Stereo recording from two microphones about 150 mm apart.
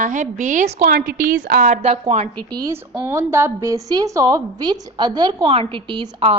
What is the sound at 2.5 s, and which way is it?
A woman's voice, 25° right (ahead or behind).